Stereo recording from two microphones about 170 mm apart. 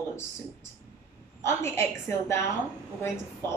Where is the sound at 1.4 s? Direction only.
15° left (ahead or behind).